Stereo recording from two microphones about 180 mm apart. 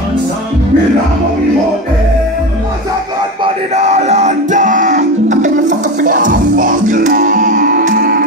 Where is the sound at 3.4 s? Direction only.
40° right (ahead or behind); by 8.2 s 55° right (ahead or behind).